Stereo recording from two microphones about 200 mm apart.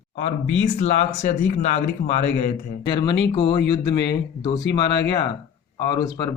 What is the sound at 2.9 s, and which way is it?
Speech, 25° left (ahead or behind).